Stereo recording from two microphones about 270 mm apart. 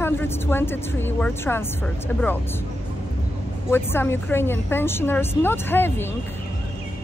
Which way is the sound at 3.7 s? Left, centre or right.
Centre.